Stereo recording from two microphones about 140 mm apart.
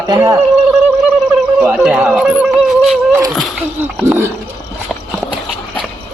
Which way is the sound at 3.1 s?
25° right (ahead or behind).